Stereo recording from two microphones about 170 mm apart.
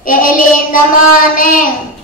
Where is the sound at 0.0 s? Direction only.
55° left (ahead or behind).